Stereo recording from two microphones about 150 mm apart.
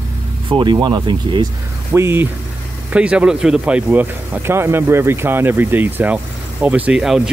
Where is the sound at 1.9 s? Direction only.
15° right (ahead or behind).